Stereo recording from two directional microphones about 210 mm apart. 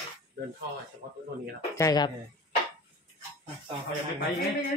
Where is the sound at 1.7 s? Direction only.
15° left (ahead or behind).